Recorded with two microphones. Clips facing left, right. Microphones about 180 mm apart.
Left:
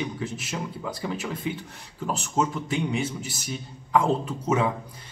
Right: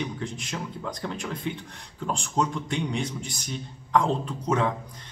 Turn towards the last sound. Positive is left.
turn(degrees=5)  # may be behind; listen again after turning